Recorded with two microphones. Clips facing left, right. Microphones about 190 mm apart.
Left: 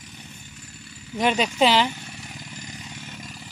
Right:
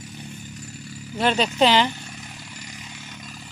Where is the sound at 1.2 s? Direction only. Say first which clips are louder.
Right 1 dB; 10° left (ahead or behind).